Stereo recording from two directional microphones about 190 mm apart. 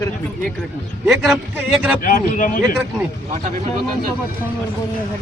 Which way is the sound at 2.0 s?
45° left (ahead or behind).